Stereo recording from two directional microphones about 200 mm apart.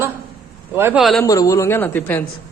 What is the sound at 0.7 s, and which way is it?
Speech, 10° right (ahead or behind).